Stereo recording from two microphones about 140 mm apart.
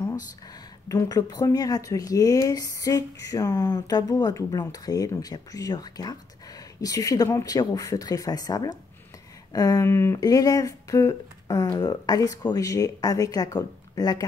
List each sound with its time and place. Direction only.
0.8 s speech: 25° left (ahead or behind)